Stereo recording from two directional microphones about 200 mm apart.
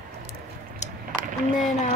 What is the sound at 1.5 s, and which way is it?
Speech, 40° left (ahead or behind).